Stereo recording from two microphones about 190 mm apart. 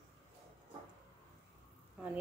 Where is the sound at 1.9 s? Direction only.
10° right (ahead or behind).